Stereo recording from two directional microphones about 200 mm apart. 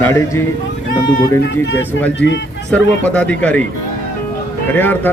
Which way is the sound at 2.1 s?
65° left (ahead or behind).